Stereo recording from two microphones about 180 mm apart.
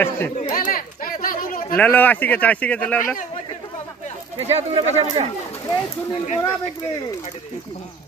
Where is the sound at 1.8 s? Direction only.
10° left (ahead or behind).